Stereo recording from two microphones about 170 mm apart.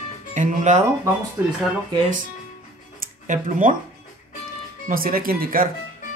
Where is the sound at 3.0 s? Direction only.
50° right (ahead or behind).